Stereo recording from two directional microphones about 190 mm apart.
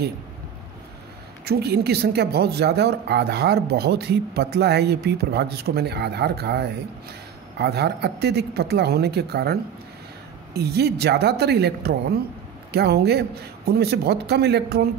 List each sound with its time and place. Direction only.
1.4 s a woman's voice: 55° right (ahead or behind)